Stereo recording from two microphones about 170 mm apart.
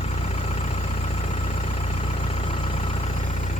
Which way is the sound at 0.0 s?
40° left (ahead or behind).